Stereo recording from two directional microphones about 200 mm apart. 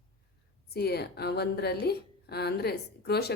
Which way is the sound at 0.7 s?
55° left (ahead or behind).